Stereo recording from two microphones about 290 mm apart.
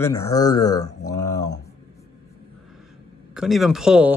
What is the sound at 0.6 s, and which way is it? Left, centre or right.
Speech, left.